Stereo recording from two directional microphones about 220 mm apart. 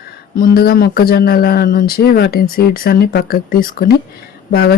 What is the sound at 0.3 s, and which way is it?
Speech, 40° left (ahead or behind).